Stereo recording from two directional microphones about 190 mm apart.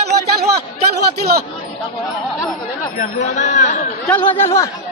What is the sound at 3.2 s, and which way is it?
Speech, 40° left (ahead or behind).